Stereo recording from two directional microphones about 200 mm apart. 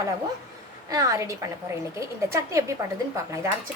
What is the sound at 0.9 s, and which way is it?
A woman's voice, 15° right (ahead or behind).